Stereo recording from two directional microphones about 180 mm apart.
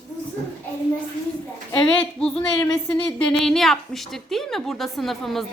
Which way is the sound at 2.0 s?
5° left (ahead or behind).